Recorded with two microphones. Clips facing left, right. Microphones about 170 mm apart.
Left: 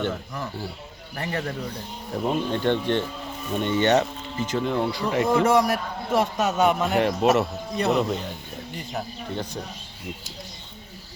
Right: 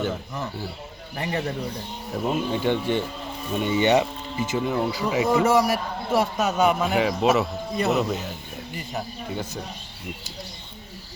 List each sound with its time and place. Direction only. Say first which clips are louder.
0.1 s a man's voice: right 1 dB; 20° right (ahead or behind)
2.1 s speech: even; 5° right (ahead or behind)